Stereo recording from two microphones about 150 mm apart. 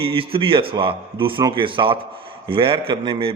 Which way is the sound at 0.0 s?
40° right (ahead or behind).